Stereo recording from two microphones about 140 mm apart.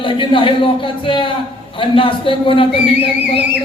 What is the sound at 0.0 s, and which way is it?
A man's voice, 40° left (ahead or behind).